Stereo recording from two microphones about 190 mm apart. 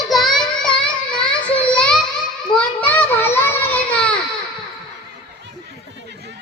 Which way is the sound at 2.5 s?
10° left (ahead or behind).